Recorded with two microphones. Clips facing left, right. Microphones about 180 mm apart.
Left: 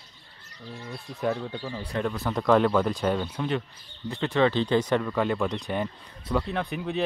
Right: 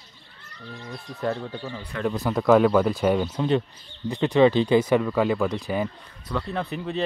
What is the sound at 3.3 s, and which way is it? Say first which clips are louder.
Speech: right 6 dB; 25° right (ahead or behind).